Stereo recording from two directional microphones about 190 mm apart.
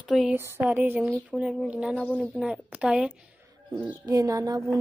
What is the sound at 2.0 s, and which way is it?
Speech, 5° left (ahead or behind).